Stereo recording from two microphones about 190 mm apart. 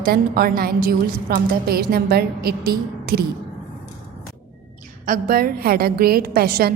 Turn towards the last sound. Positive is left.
turn(degrees=-55)  # may be behind; listen again after turning